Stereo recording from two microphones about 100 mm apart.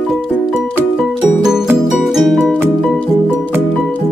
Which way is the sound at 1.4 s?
5° right (ahead or behind).